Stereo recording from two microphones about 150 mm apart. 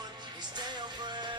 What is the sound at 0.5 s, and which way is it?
Music, 30° right (ahead or behind).